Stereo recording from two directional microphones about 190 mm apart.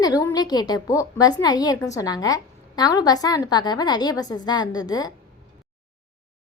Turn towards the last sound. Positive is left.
turn(degrees=20)  # may be behind; listen again after turning